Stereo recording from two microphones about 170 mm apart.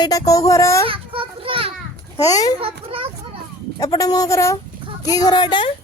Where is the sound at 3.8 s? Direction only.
20° left (ahead or behind).